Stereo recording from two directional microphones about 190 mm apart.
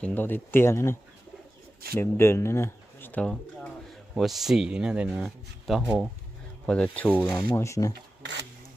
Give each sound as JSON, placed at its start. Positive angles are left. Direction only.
{"t": 0.0, "sound": "speech", "side_deg": 10}
{"t": 2.0, "sound": "speech", "side_deg": 15}
{"t": 7.9, "sound": "rub", "side_deg": -65}